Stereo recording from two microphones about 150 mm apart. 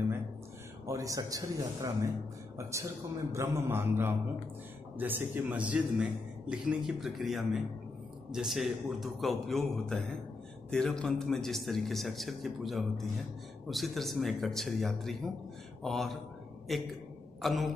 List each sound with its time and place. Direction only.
0.8 s a man's voice: 20° right (ahead or behind); by 17.6 s centre (ahead or behind)